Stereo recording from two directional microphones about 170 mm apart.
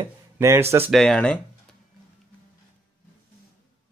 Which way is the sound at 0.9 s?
5° left (ahead or behind).